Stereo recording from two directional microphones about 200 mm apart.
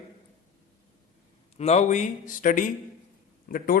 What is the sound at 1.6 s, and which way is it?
A man's voice, 35° left (ahead or behind).